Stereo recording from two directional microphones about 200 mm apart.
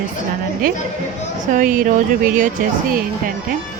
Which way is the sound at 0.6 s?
45° right (ahead or behind).